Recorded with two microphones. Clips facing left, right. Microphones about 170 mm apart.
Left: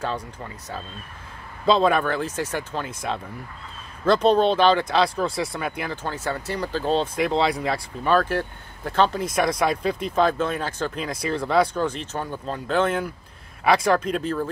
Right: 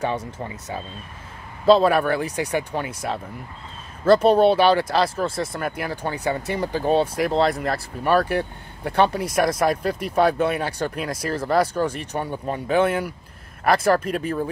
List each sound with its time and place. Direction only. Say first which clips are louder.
0.0 s speech: right 3 dB; 20° right (ahead or behind)
1.7 s speech: right 3 dB; 5° right (ahead or behind)
4.0 s speech: right 3 dB; 10° right (ahead or behind)